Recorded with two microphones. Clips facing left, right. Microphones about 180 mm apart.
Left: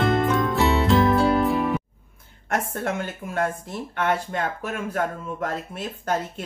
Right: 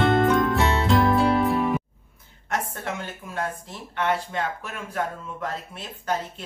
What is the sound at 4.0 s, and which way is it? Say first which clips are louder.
Speech: left 1 dB; 50° left (ahead or behind).